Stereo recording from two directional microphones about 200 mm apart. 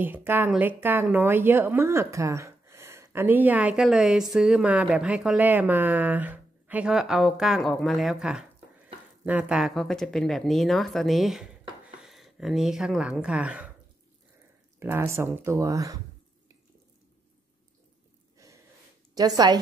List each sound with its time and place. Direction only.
0.0 s a woman's voice: 10° right (ahead or behind)
14.8 s a woman's voice: 10° right (ahead or behind)
19.1 s a woman's voice: 20° right (ahead or behind)